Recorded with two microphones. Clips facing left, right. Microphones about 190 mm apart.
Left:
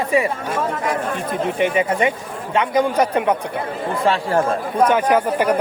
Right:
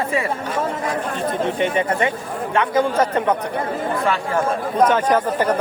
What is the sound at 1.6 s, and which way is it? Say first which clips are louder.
Speech: left 3 dB; 10° left (ahead or behind).